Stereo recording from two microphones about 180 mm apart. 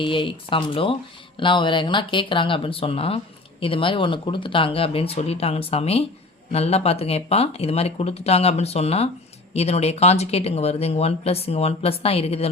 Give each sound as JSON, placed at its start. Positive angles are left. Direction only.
{"t": 0.0, "sound": "speech", "side_deg": 30}